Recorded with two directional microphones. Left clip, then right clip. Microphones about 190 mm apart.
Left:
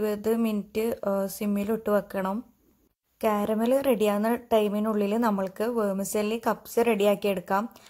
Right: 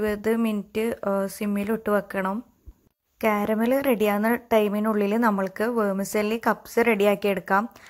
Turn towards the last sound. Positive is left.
turn(degrees=-15)  # may be behind; listen again after turning